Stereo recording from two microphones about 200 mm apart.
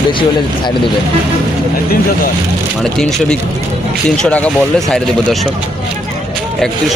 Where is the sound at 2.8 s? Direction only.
Centre (ahead or behind).